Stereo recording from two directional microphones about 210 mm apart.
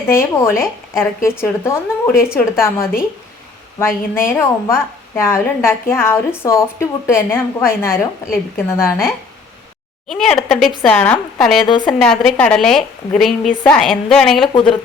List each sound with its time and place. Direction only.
0.1 s a woman's voice: 10° left (ahead or behind)
10.1 s a woman's voice: centre (ahead or behind)
11.7 s a woman's voice: 20° left (ahead or behind)
12.0 s a woman's voice: 5° left (ahead or behind)